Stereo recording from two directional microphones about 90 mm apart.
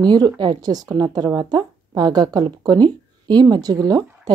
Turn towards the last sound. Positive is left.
turn(degrees=-45)  # may be behind; listen again after turning